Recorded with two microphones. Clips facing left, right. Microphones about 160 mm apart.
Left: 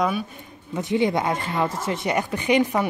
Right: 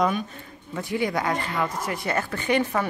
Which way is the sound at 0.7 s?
20° left (ahead or behind).